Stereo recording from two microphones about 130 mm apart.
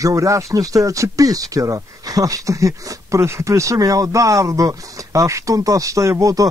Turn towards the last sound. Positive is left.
turn(degrees=-25)  # may be behind; listen again after turning